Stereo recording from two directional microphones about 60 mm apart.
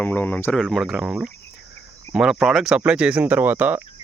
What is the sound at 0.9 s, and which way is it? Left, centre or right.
Speech, centre.